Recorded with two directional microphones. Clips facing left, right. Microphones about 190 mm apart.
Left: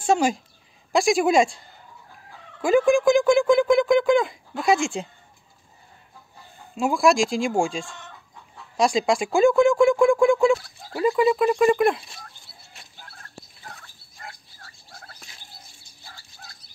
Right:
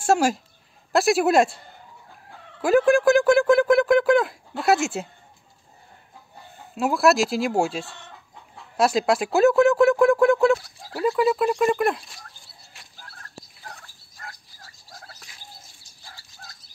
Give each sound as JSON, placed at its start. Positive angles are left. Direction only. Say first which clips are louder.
{"t": 0.0, "sound": "a woman's voice", "louder": "right 1 dB", "side_deg": -5}
{"t": 2.6, "sound": "speech", "louder": "even", "side_deg": -5}
{"t": 6.7, "sound": "speech", "louder": "even", "side_deg": -5}
{"t": 14.2, "sound": "turkey", "louder": "left 1 dB", "side_deg": 25}
{"t": 14.7, "sound": "turkey", "louder": "right 2 dB", "side_deg": -40}